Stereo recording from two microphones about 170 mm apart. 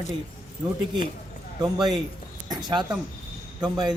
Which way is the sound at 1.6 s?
25° right (ahead or behind).